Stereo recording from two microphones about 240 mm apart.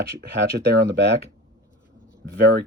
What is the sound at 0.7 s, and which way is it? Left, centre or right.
Speech, right.